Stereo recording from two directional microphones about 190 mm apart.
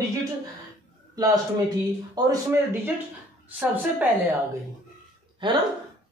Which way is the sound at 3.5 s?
10° right (ahead or behind).